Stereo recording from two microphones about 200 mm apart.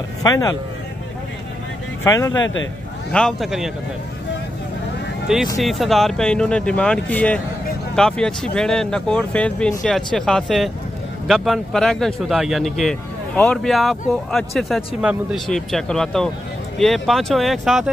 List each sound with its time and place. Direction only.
0.2 s speech: 20° left (ahead or behind)
2.0 s speech: 15° left (ahead or behind)
2.4 s a man's voice: 75° left (ahead or behind)
3.1 s speech: 5° left (ahead or behind)
5.6 s speech: centre (ahead or behind)